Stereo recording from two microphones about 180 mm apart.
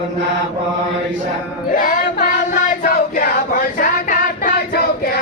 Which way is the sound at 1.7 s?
50° left (ahead or behind).